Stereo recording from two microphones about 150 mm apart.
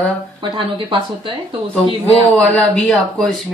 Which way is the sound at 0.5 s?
35° right (ahead or behind).